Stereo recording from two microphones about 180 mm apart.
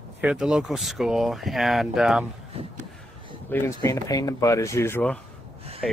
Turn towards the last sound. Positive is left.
turn(degrees=0)  # may be behind; listen again after turning